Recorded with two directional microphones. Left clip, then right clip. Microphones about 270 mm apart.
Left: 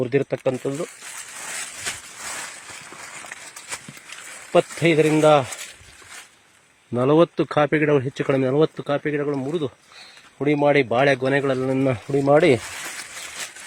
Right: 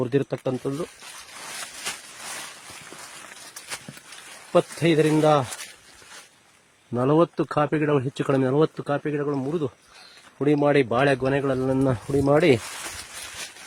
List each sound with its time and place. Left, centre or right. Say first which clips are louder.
0.0 s speech: left 3 dB; centre
1.0 s a sound: left 4 dB; left
4.8 s speech: left 4 dB; centre
6.9 s speech: left 3 dB; centre
12.6 s speech: left 2 dB; left